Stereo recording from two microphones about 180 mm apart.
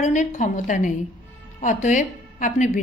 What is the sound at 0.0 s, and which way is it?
A woman's voice, 40° left (ahead or behind).